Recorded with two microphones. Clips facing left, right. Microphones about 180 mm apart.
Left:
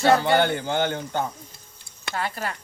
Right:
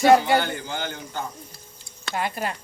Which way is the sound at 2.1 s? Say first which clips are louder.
Right 2 dB; 15° right (ahead or behind).